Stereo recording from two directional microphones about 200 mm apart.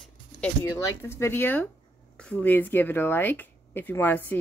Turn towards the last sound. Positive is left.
turn(degrees=10)  # may be behind; listen again after turning